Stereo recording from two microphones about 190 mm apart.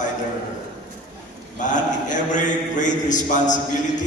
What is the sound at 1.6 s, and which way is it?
A man's voice, 40° left (ahead or behind).